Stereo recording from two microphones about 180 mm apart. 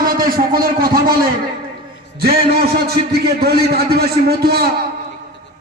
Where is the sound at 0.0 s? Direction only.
50° right (ahead or behind).